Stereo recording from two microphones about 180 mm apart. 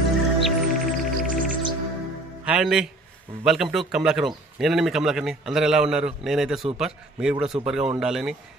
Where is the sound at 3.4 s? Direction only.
Centre (ahead or behind).